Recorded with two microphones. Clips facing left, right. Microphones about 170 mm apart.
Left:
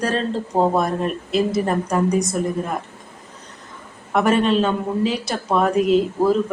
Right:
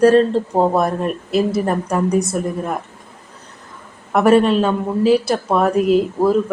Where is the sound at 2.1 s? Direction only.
60° right (ahead or behind).